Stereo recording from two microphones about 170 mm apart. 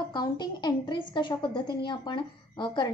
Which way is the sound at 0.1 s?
25° left (ahead or behind).